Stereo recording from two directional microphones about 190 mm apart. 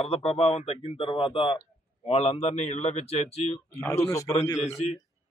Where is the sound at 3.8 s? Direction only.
15° left (ahead or behind).